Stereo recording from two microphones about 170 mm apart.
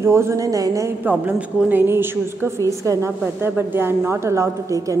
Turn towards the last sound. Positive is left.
turn(degrees=-20)  # may be behind; listen again after turning